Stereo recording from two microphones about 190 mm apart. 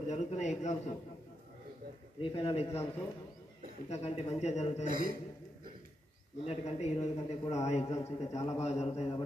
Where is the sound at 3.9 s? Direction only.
30° left (ahead or behind).